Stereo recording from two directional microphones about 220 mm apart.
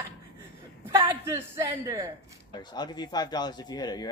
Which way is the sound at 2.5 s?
20° left (ahead or behind).